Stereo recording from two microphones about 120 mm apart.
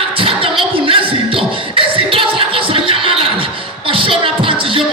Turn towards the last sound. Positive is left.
turn(degrees=-45)  # may be behind; listen again after turning